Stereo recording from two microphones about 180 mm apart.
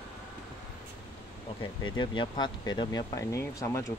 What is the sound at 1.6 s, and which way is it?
Speech, 25° left (ahead or behind).